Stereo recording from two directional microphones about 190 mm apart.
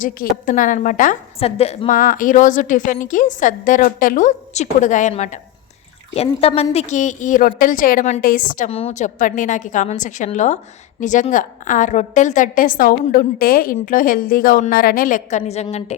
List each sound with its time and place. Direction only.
0.0 s a woman's voice: 45° left (ahead or behind)
1.4 s a woman's voice: 30° left (ahead or behind)
8.7 s a woman's voice: 35° left (ahead or behind)